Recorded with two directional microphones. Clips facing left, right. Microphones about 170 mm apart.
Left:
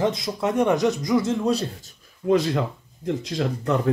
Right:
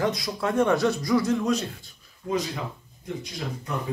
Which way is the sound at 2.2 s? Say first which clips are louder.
Left 8 dB; 70° left (ahead or behind).